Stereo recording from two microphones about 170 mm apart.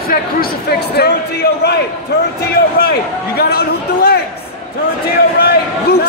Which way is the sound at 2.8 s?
65° left (ahead or behind).